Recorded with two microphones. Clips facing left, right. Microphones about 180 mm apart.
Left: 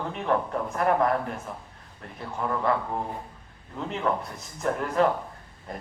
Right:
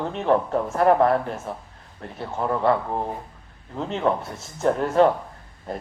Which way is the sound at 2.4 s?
30° right (ahead or behind).